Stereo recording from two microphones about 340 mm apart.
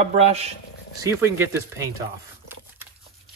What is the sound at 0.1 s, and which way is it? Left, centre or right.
Speech, centre.